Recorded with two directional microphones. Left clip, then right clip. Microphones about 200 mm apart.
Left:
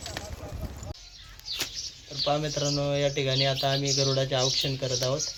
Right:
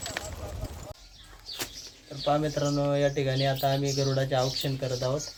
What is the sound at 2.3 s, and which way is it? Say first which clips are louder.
Speech: right 2 dB; 10° left (ahead or behind).